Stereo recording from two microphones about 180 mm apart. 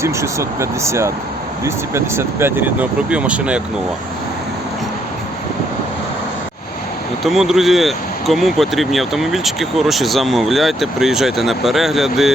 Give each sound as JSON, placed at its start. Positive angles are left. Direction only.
{"t": 0.0, "sound": "speech", "side_deg": -15}
{"t": 7.3, "sound": "speech", "side_deg": 0}